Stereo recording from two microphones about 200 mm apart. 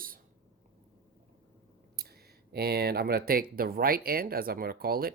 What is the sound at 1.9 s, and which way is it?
Speech, 50° right (ahead or behind).